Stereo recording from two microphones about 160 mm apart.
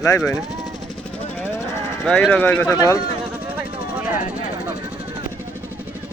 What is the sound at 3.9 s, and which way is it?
Vehicle, 10° right (ahead or behind).